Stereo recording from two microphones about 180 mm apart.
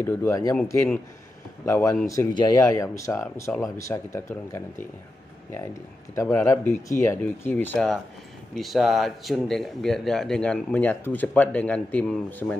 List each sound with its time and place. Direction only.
0.0 s speech: 15° left (ahead or behind)
6.2 s speech: 15° left (ahead or behind)